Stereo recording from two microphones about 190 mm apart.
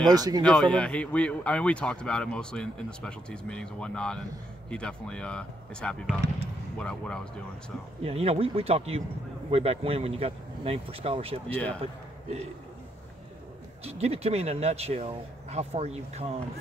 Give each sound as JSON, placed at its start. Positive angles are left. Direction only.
{"t": 0.1, "sound": "speech", "side_deg": -20}
{"t": 0.4, "sound": "speech", "side_deg": 5}
{"t": 8.0, "sound": "speech", "side_deg": -30}
{"t": 11.4, "sound": "speech", "side_deg": 5}
{"t": 13.8, "sound": "speech", "side_deg": -35}